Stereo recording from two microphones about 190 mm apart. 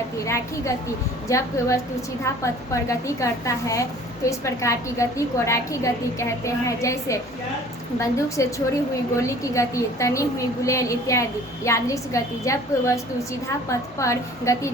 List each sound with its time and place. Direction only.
0.3 s a woman's voice: 15° left (ahead or behind)